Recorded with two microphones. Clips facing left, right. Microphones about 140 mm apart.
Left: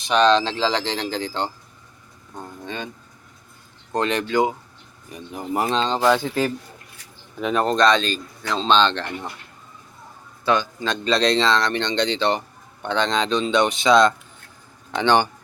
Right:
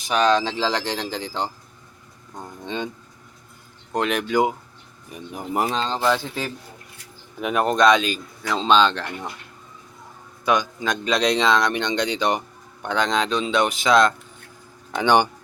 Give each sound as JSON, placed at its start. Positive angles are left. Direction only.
{"t": 0.1, "sound": "speech", "side_deg": -10}
{"t": 3.9, "sound": "speech", "side_deg": -10}
{"t": 5.6, "sound": "speech", "side_deg": -5}
{"t": 7.4, "sound": "speech", "side_deg": -10}
{"t": 10.4, "sound": "speech", "side_deg": -15}